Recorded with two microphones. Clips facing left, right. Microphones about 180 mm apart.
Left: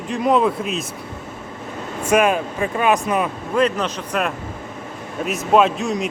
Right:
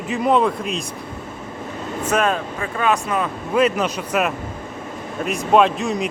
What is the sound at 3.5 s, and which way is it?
A man's voice, 5° right (ahead or behind).